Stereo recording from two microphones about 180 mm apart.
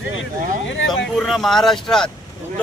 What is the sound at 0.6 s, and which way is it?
Speech, 90° left.